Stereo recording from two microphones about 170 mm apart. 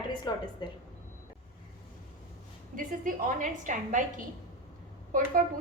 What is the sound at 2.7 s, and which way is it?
A woman's voice, 50° right (ahead or behind).